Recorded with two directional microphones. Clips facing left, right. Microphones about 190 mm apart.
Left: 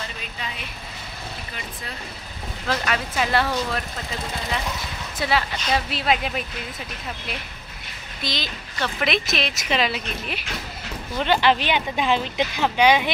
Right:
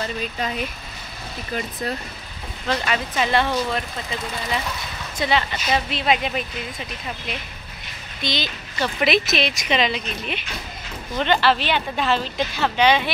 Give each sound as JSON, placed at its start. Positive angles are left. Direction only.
{"t": 1.5, "sound": "speech", "side_deg": -40}
{"t": 2.7, "sound": "a woman's voice", "side_deg": 0}
{"t": 5.2, "sound": "a woman's voice", "side_deg": 5}
{"t": 8.2, "sound": "a woman's voice", "side_deg": 0}